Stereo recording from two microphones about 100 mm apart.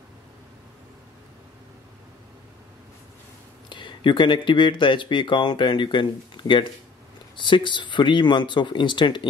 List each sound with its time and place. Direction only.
3.6 s speech: 50° left (ahead or behind)